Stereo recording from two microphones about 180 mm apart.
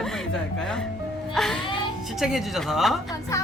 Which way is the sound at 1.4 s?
Centre (ahead or behind).